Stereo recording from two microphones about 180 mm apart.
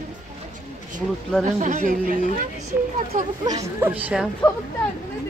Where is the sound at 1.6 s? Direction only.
40° right (ahead or behind).